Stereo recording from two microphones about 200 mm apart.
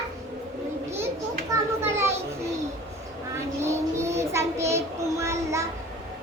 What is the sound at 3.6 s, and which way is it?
Child singing, 15° right (ahead or behind).